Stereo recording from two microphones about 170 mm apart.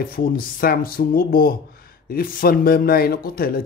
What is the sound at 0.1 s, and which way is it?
A man's voice, 60° left (ahead or behind).